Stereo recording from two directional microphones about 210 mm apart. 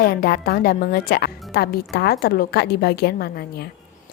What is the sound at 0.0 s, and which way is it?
Speech, 45° left (ahead or behind).